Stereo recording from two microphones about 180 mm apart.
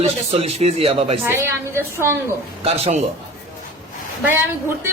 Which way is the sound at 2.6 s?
35° right (ahead or behind).